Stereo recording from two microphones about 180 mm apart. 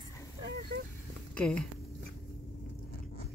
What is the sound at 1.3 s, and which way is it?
Speech, 5° left (ahead or behind).